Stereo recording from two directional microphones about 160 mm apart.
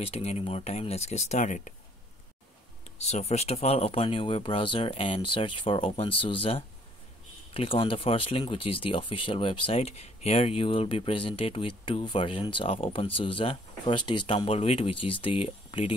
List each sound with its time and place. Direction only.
0.0 s speech: 40° left (ahead or behind)
3.1 s speech: 45° left (ahead or behind)